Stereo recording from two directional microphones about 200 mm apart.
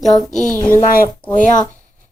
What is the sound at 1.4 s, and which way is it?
Speech, 40° left (ahead or behind).